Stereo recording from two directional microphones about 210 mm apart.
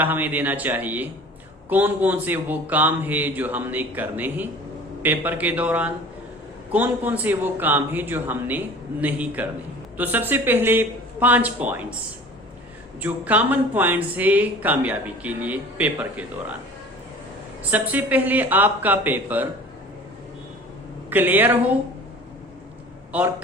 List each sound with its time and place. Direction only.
0.0 s speech: 10° right (ahead or behind)
13.0 s speech: 5° right (ahead or behind)
17.6 s speech: 10° right (ahead or behind)
21.1 s speech: 10° right (ahead or behind)
23.1 s speech: 5° right (ahead or behind)